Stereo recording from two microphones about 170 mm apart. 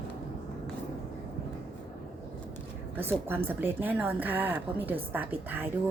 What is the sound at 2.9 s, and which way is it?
Speech, 15° right (ahead or behind).